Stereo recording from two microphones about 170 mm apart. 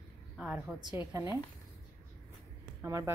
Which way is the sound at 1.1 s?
15° right (ahead or behind).